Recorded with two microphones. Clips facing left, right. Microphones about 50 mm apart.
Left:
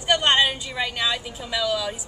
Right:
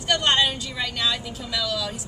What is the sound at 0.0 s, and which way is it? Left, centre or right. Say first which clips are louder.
A woman's voice: left 2 dB; centre.